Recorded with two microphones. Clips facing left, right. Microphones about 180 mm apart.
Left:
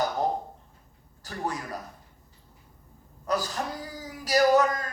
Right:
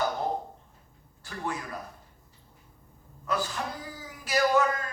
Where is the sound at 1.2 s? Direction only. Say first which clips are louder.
Left 2 dB; 40° left (ahead or behind).